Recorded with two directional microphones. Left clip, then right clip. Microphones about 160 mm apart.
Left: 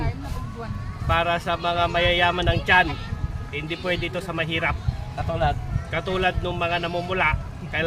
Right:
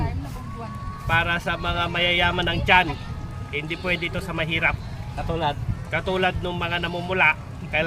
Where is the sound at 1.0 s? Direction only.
15° left (ahead or behind).